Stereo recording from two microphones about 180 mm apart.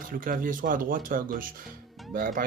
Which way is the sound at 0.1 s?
50° right (ahead or behind).